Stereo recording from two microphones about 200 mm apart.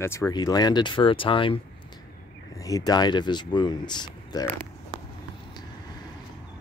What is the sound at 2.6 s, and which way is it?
Speech, 20° left (ahead or behind).